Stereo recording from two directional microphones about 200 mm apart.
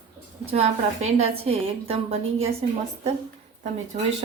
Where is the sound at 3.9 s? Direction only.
35° right (ahead or behind).